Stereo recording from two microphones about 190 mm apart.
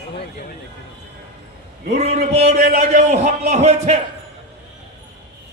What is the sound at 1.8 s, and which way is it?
A man's voice, 35° right (ahead or behind).